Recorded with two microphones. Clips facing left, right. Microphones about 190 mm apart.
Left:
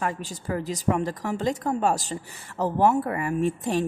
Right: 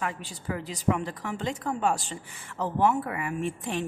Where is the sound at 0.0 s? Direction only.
40° left (ahead or behind).